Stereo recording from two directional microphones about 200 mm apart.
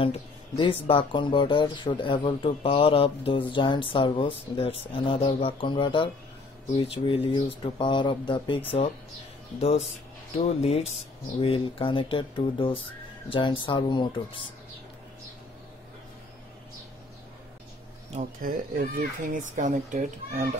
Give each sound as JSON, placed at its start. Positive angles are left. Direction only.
{"t": 0.8, "sound": "speech", "side_deg": 25}
{"t": 9.6, "sound": "speech", "side_deg": 30}
{"t": 18.1, "sound": "speech", "side_deg": -45}